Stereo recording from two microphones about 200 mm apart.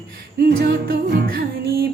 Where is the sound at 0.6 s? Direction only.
50° right (ahead or behind).